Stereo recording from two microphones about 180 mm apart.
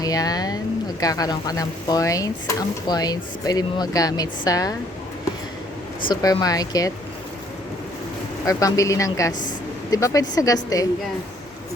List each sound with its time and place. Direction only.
0.0 s speech: 20° left (ahead or behind)
6.1 s speech: 20° left (ahead or behind)
8.4 s a woman's voice: 20° left (ahead or behind)